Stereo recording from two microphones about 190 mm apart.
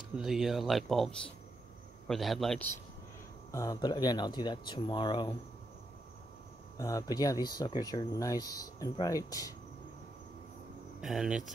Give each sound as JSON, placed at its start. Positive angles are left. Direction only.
{"t": 0.2, "sound": "speech", "side_deg": 0}
{"t": 3.5, "sound": "speech", "side_deg": 20}
{"t": 6.8, "sound": "speech", "side_deg": 20}
{"t": 11.0, "sound": "speech", "side_deg": 0}